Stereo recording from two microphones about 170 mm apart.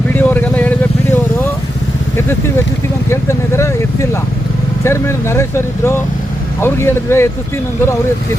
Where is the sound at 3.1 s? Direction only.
15° left (ahead or behind).